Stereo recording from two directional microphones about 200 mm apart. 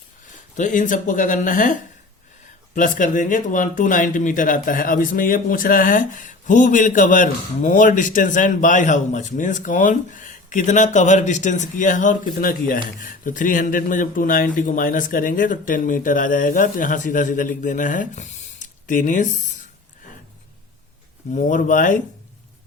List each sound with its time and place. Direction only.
0.5 s speech: 40° left (ahead or behind)
21.3 s speech: 40° left (ahead or behind)